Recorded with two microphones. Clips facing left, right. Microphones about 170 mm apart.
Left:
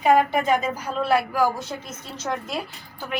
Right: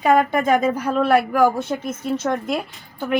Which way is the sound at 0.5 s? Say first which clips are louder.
Right 5 dB; 55° right (ahead or behind).